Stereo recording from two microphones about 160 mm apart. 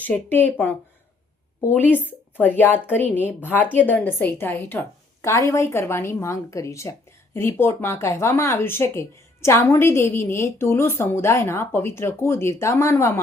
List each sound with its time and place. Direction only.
0.0 s speech: 10° left (ahead or behind)